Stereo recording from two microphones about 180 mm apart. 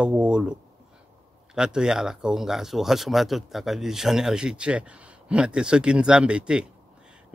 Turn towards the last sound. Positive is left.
turn(degrees=-5)  # may be behind; listen again after turning